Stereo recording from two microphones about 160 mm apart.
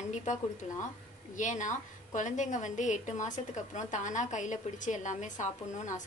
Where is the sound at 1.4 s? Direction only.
50° left (ahead or behind).